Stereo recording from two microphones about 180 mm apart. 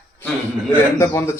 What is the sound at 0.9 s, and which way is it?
Speech, 15° left (ahead or behind).